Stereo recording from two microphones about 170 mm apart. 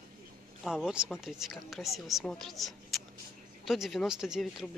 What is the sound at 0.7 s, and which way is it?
Speech, 5° right (ahead or behind).